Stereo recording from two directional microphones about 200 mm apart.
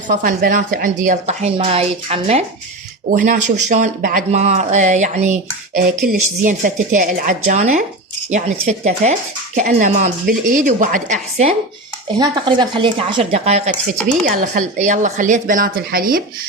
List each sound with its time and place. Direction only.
0.2 s speech: 45° right (ahead or behind)
12.2 s speech: 20° right (ahead or behind); by 16.2 s 45° right (ahead or behind)